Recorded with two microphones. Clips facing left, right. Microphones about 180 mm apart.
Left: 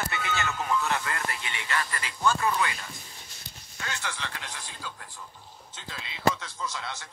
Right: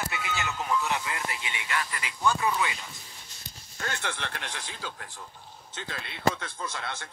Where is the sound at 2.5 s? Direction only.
5° right (ahead or behind).